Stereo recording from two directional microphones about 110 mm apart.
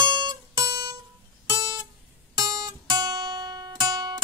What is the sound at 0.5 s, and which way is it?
Music, 40° right (ahead or behind).